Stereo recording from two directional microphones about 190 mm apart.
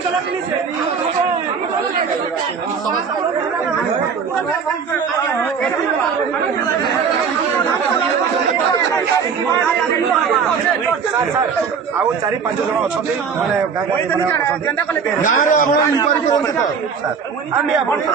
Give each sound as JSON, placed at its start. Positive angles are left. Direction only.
{"t": 15.2, "sound": "a man's voice", "side_deg": 40}